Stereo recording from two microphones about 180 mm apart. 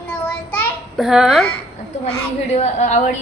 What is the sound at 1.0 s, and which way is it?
Speech, 5° right (ahead or behind).